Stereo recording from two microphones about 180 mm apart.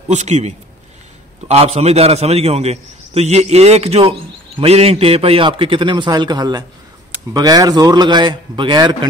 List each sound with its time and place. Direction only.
0.1 s a man's voice: 40° right (ahead or behind)